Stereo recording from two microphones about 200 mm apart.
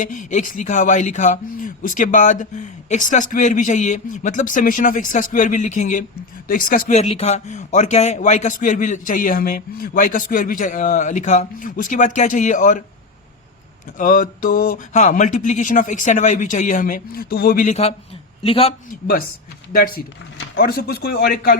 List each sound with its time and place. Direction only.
0.0 s speech: 40° left (ahead or behind)
14.0 s a man's voice: 40° left (ahead or behind)
18.9 s a man's voice: 45° left (ahead or behind)